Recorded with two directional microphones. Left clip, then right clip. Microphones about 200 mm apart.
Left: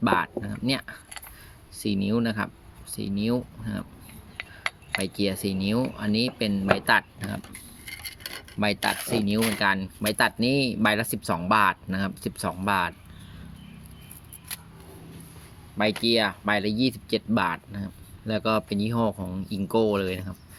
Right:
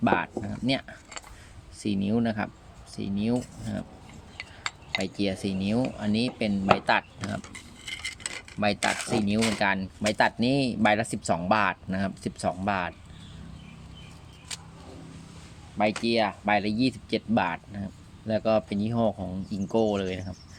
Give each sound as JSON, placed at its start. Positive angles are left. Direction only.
{"t": 0.0, "sound": "speech", "side_deg": 20}
{"t": 4.4, "sound": "cutlery", "side_deg": 15}
{"t": 4.9, "sound": "speech", "side_deg": 20}
{"t": 8.5, "sound": "speech", "side_deg": 10}
{"t": 16.0, "sound": "speech", "side_deg": 20}